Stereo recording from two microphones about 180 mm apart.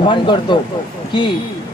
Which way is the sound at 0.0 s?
25° left (ahead or behind).